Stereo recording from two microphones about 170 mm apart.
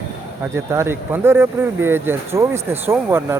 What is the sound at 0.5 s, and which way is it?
Speech, 15° right (ahead or behind).